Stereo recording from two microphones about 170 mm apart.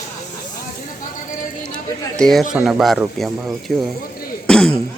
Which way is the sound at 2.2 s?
Centre (ahead or behind).